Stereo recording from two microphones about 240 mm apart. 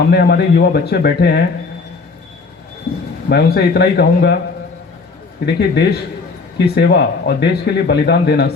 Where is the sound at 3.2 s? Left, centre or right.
Left.